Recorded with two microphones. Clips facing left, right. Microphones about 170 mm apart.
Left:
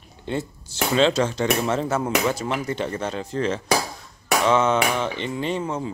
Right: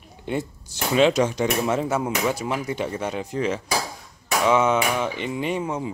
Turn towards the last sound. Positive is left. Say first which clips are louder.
# even
turn(degrees=-15)  # may be behind; listen again after turning